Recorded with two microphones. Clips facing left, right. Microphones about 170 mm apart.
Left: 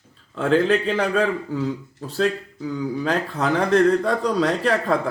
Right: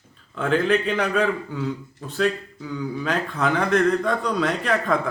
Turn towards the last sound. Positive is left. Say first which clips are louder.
# left 2 dB
turn(degrees=35)  # may be behind; listen again after turning